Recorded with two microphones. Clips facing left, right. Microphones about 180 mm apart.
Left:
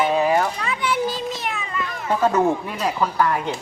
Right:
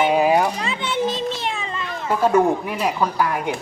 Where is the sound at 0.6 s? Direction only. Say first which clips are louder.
Even; 25° right (ahead or behind).